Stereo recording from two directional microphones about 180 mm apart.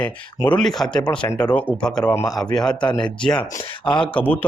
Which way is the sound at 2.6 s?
25° left (ahead or behind).